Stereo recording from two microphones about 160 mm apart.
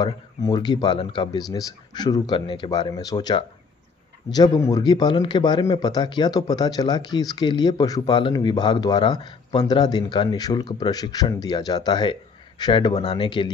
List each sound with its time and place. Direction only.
0.0 s a man's voice: 25° left (ahead or behind)